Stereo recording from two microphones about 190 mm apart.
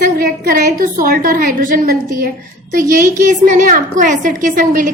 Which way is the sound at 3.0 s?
45° right (ahead or behind).